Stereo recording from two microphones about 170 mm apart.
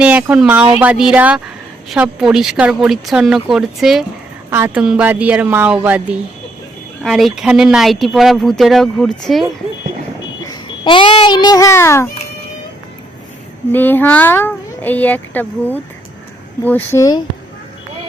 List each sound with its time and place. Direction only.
0.0 s speech: 10° right (ahead or behind)
10.4 s a child's voice: 25° left (ahead or behind)
13.7 s speech: 10° left (ahead or behind)